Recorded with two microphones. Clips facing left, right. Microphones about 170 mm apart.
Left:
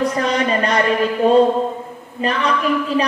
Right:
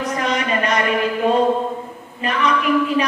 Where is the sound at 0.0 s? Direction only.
35° left (ahead or behind).